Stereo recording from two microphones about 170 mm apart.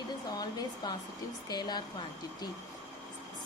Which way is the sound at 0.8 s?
25° left (ahead or behind).